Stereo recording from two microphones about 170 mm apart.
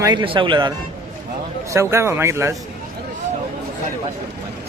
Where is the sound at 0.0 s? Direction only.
25° right (ahead or behind).